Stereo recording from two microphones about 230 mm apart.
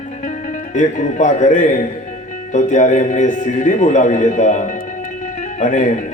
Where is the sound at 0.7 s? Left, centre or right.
Left.